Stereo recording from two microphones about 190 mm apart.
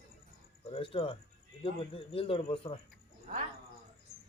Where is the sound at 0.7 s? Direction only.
30° left (ahead or behind).